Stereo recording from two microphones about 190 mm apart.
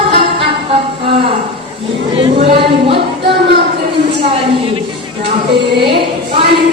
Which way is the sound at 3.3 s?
60° right (ahead or behind).